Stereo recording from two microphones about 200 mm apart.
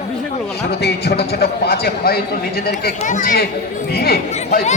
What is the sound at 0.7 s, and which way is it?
A man's voice, 55° left (ahead or behind).